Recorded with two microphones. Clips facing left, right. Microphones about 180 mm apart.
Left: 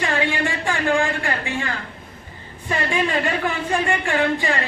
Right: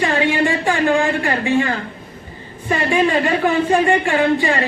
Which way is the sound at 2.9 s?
20° right (ahead or behind).